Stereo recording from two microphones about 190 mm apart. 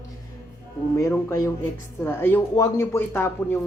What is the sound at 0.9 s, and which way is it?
Speech, 15° left (ahead or behind).